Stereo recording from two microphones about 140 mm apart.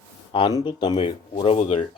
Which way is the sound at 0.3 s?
35° left (ahead or behind).